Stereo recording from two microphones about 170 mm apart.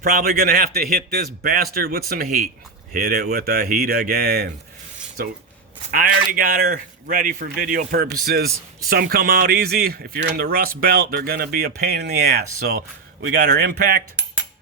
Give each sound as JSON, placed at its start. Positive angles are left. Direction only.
{"t": 0.0, "sound": "speech", "side_deg": -60}
{"t": 5.9, "sound": "a man's voice", "side_deg": -55}